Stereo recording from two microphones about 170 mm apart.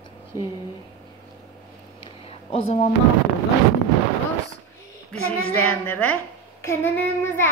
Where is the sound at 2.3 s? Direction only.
35° left (ahead or behind).